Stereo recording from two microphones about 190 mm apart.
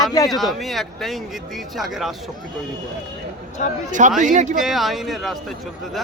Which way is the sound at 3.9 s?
40° right (ahead or behind).